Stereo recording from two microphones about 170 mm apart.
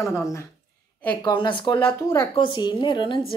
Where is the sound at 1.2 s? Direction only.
30° left (ahead or behind).